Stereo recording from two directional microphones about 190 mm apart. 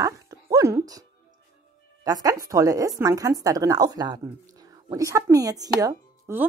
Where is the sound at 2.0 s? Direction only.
20° right (ahead or behind).